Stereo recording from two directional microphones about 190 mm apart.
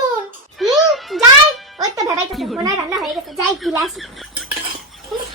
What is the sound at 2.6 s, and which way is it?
Speech, 20° right (ahead or behind).